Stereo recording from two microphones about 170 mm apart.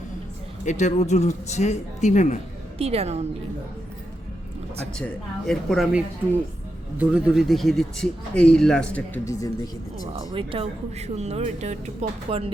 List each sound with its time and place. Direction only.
0.6 s speech: 45° left (ahead or behind)
2.7 s speech: 35° right (ahead or behind)
4.9 s speech: 5° left (ahead or behind)
10.1 s speech: 30° right (ahead or behind)